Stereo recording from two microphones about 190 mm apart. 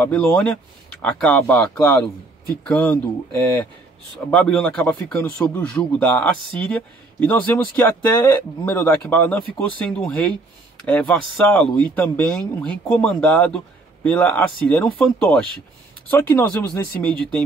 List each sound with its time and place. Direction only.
0.0 s speech: 5° left (ahead or behind)
4.3 s speech: 5° left (ahead or behind)